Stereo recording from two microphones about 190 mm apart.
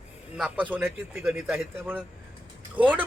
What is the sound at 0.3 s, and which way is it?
A man's voice, 5° right (ahead or behind).